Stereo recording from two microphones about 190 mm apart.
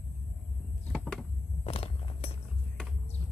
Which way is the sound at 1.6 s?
30° left (ahead or behind).